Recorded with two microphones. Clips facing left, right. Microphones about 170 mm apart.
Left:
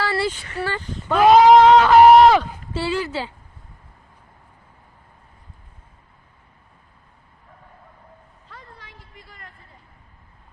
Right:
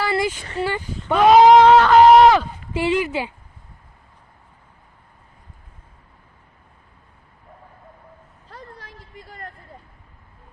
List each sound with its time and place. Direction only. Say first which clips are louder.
0.0 s a sound: right 1 dB; 15° right (ahead or behind)
0.6 s speech: right 2 dB; 15° right (ahead or behind)
1.1 s a sound: even; centre (ahead or behind)
1.5 s wind instrument: even; centre (ahead or behind)
2.7 s speech: right 3 dB; 15° right (ahead or behind)
8.4 s vehicle: right 5 dB; 40° right (ahead or behind)